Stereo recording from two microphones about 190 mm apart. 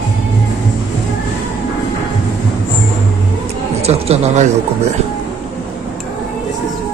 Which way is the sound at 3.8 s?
35° right (ahead or behind).